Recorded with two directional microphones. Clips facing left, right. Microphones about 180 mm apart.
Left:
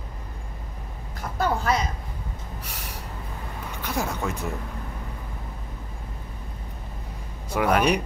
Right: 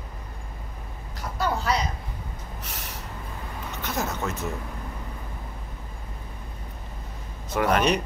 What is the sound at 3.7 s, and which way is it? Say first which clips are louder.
Speech: left 1 dB; 10° left (ahead or behind).